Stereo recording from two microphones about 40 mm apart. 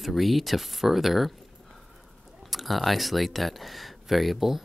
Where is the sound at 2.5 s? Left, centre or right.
Centre.